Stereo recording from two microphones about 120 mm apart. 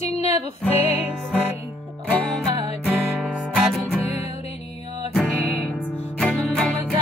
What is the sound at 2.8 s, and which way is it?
Music, 15° right (ahead or behind).